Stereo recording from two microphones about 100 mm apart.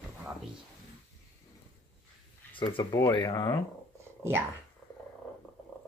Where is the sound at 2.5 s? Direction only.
55° left (ahead or behind).